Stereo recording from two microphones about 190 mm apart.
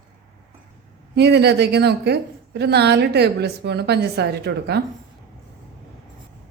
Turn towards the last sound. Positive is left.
turn(degrees=-60)  # may be behind; listen again after turning